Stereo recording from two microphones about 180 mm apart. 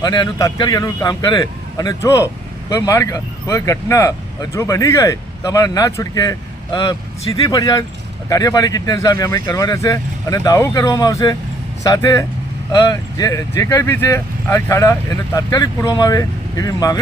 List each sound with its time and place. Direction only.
0.0 s a man's voice: 25° left (ahead or behind)